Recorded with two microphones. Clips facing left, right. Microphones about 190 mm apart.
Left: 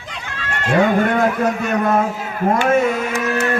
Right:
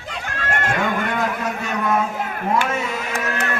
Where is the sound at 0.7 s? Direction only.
45° left (ahead or behind).